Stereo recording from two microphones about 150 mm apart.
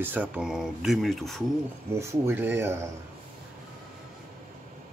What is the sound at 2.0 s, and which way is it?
Speech, 15° right (ahead or behind).